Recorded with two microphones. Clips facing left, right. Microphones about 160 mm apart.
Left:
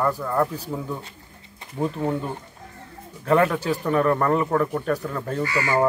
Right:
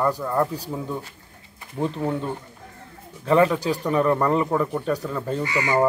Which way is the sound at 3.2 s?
Centre (ahead or behind).